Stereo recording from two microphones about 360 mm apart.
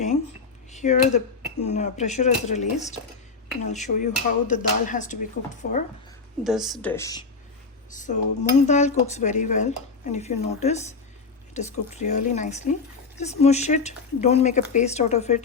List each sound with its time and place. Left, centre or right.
0.7 s speech: centre
6.4 s a woman's voice: centre
7.9 s speech: left